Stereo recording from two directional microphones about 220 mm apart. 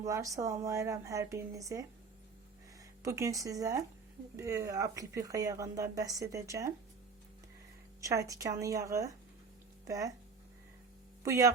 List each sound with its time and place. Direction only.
0.0 s speech: 15° right (ahead or behind)
3.0 s speech: 15° right (ahead or behind)
8.0 s speech: 15° right (ahead or behind)
11.2 s speech: 15° right (ahead or behind)